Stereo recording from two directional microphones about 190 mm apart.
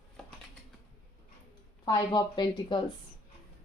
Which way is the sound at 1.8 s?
25° left (ahead or behind).